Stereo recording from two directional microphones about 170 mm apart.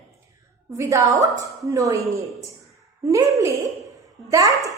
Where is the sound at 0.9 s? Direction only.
20° right (ahead or behind).